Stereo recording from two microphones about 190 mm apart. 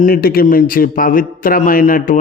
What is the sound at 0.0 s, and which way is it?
A man's voice, 50° left (ahead or behind).